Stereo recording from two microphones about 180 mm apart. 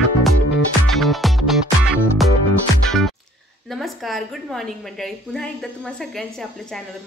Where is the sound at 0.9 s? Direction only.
Centre (ahead or behind).